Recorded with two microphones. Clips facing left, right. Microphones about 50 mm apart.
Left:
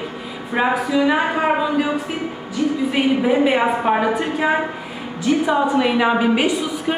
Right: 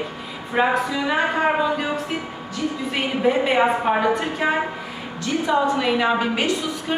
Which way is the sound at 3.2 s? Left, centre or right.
Centre.